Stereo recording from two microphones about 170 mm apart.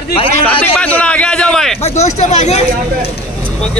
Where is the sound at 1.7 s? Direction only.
40° left (ahead or behind).